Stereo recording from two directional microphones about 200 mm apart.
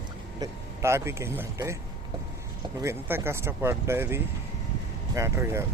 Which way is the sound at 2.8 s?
10° right (ahead or behind).